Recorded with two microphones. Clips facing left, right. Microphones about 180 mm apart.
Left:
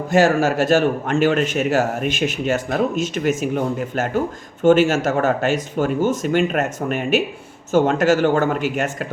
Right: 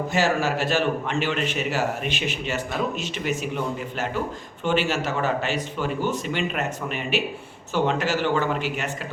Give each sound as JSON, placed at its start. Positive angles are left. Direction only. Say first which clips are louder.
{"t": 0.1, "sound": "a man's voice", "louder": "left 9 dB", "side_deg": 50}